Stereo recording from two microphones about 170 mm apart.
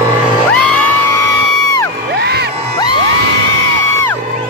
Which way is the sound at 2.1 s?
75° right (ahead or behind).